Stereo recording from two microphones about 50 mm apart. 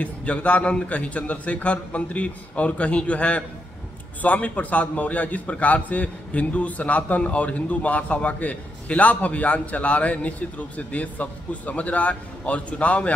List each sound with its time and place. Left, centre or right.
0.0 s a man's voice: left